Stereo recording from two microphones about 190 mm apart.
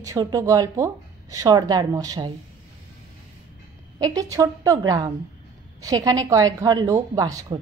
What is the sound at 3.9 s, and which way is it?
A woman's voice, 20° right (ahead or behind).